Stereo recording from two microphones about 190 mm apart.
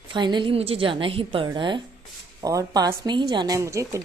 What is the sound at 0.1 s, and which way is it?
A woman's voice, 25° right (ahead or behind).